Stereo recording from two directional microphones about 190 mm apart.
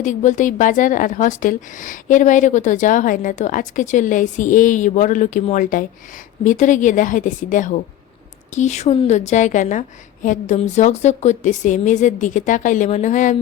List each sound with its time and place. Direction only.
0.0 s a woman's voice: 40° left (ahead or behind)